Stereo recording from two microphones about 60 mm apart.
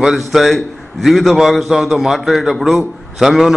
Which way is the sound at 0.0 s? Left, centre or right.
Centre.